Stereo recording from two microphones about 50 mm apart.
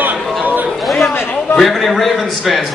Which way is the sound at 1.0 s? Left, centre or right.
Left.